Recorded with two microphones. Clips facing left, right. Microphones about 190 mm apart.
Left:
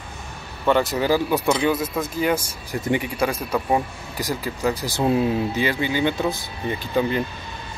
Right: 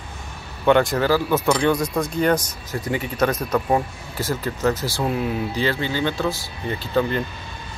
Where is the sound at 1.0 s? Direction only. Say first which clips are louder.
Right 1 dB; 15° left (ahead or behind).